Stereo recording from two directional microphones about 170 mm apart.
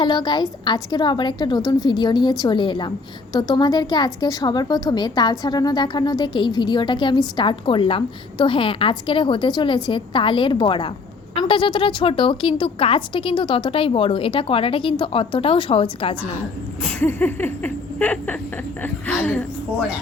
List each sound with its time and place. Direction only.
0.0 s a woman's voice: 25° left (ahead or behind)
16.8 s laughter: 10° left (ahead or behind)